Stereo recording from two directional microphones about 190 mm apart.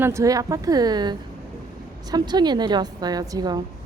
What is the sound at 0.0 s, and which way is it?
A woman's voice, 15° right (ahead or behind).